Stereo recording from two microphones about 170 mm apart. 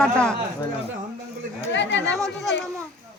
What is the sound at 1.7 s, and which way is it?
Chatter, 90° left.